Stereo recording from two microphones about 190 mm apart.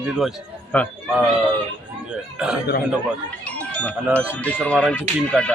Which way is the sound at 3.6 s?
5° left (ahead or behind).